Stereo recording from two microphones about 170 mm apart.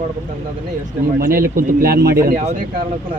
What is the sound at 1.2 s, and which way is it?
Speech, 60° right (ahead or behind).